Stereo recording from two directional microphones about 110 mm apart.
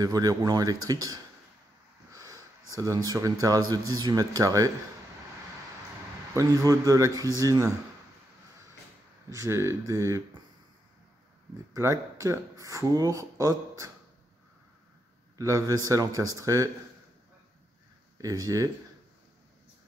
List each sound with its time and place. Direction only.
0.0 s a man's voice: 35° right (ahead or behind)
6.3 s speech: 30° right (ahead or behind)
9.3 s speech: 25° right (ahead or behind)
11.7 s speech: 30° right (ahead or behind)
15.3 s a man's voice: 30° right (ahead or behind)
18.1 s speech: 35° right (ahead or behind)